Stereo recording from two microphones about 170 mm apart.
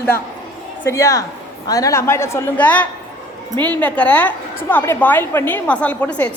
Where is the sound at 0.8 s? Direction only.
20° left (ahead or behind).